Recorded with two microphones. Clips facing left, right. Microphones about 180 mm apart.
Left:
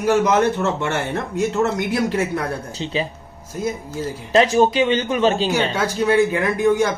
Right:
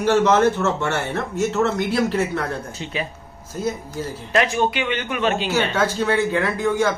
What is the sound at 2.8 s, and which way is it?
Speech, 30° left (ahead or behind).